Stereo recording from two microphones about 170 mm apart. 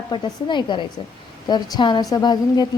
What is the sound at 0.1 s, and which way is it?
A woman's voice, 25° left (ahead or behind).